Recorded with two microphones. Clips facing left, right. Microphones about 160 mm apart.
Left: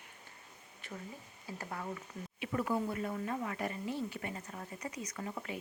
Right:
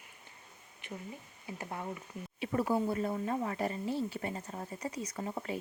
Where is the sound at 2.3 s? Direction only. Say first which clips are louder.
Right 3 dB; 35° right (ahead or behind).